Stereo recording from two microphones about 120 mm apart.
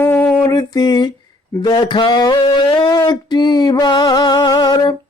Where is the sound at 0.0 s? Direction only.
15° left (ahead or behind).